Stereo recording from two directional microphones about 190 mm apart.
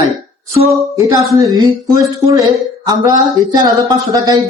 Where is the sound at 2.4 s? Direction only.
20° right (ahead or behind).